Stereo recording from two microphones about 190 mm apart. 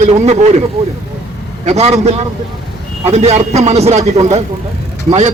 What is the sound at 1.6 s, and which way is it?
A man's voice, 35° right (ahead or behind).